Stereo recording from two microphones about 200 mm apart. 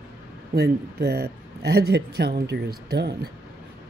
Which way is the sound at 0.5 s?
55° right (ahead or behind).